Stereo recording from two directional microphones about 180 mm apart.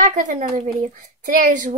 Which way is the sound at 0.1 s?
40° right (ahead or behind).